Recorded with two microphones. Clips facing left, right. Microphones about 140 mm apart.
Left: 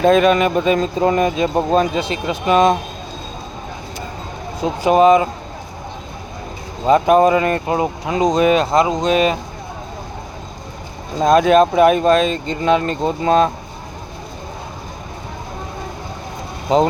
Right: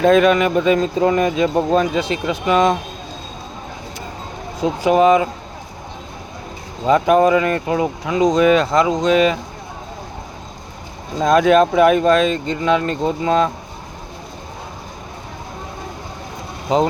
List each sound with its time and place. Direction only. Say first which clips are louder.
0.0 s speech: even; 25° left (ahead or behind)
4.6 s speech: left 1 dB; 25° left (ahead or behind)
6.8 s speech: left 1 dB; 25° left (ahead or behind)
11.2 s speech: left 1 dB; 30° left (ahead or behind)